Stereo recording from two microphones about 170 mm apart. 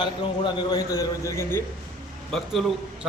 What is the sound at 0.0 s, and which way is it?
A man's voice, 25° left (ahead or behind).